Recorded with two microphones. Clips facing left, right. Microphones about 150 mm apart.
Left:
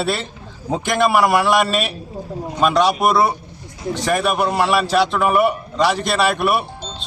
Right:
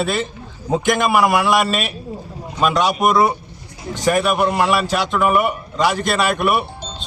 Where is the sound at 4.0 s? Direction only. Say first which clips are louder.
Right 2 dB; centre (ahead or behind).